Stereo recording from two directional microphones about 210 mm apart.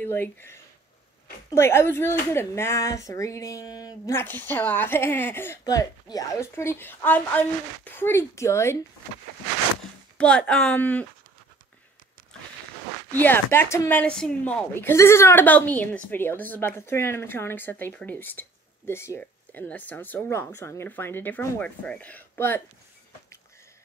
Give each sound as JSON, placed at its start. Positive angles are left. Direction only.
{"t": 0.0, "sound": "speech", "side_deg": 10}
{"t": 10.1, "sound": "speech", "side_deg": 5}
{"t": 13.1, "sound": "speech", "side_deg": 10}